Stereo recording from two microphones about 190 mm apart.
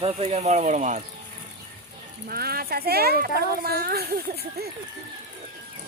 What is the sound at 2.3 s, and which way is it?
Speech, 55° right (ahead or behind).